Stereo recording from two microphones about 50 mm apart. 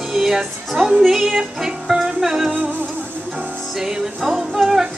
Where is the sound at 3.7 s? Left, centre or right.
Centre.